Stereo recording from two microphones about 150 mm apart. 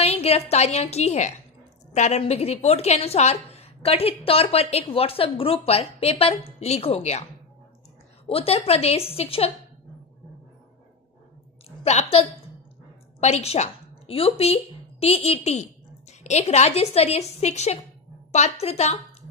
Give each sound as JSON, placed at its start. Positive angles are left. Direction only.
{"t": 0.0, "sound": "a woman's voice", "side_deg": 40}
{"t": 8.3, "sound": "speech", "side_deg": 40}
{"t": 11.8, "sound": "a woman's voice", "side_deg": 45}